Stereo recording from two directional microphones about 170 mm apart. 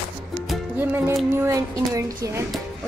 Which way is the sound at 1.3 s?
15° right (ahead or behind).